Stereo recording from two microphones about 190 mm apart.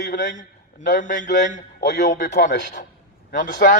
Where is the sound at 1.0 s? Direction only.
40° left (ahead or behind).